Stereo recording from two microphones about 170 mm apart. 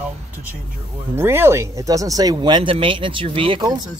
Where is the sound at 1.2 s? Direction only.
15° right (ahead or behind).